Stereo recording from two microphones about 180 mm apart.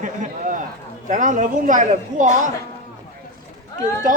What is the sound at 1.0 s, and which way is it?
Speech, 45° right (ahead or behind).